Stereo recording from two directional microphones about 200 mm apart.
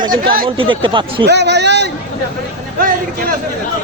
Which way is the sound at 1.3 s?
60° right (ahead or behind).